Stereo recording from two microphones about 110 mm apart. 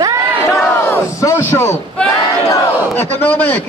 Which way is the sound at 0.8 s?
25° left (ahead or behind).